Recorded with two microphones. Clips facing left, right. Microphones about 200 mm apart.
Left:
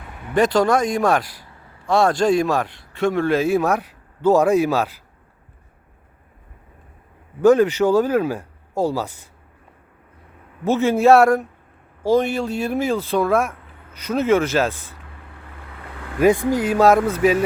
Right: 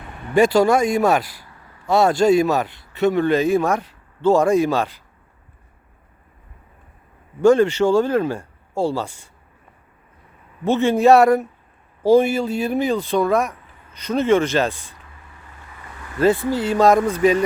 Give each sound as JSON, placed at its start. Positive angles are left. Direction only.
{"t": 0.3, "sound": "speech", "side_deg": -5}
{"t": 1.4, "sound": "a sound", "side_deg": 25}
{"t": 1.9, "sound": "speech", "side_deg": -5}
{"t": 7.4, "sound": "speech", "side_deg": 5}
{"t": 10.7, "sound": "speech", "side_deg": 5}
{"t": 15.2, "sound": "vehicle", "side_deg": 60}
{"t": 16.2, "sound": "speech", "side_deg": 15}